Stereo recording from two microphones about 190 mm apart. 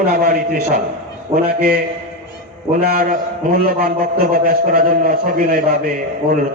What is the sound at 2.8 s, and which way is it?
A man's voice, 50° right (ahead or behind).